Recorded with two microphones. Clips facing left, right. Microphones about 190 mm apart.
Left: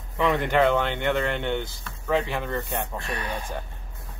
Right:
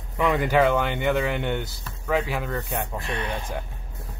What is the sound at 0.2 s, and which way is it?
Speech, 5° right (ahead or behind).